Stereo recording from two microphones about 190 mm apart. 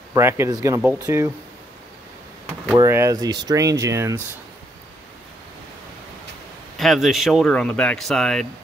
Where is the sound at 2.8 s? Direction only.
15° right (ahead or behind).